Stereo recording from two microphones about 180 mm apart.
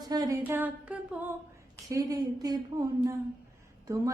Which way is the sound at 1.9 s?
20° right (ahead or behind).